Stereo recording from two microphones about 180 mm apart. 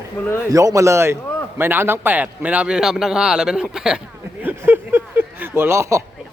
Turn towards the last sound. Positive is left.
turn(degrees=-15)  # may be behind; listen again after turning